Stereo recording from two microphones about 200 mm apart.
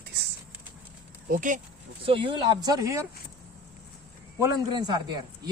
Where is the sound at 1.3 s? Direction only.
40° right (ahead or behind).